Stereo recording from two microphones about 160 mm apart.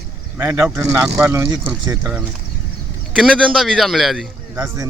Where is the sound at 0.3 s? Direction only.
15° right (ahead or behind).